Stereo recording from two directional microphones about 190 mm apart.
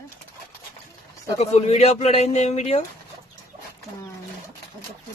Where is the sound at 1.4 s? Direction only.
35° left (ahead or behind).